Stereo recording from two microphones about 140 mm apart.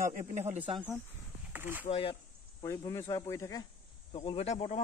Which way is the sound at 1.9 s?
45° left (ahead or behind).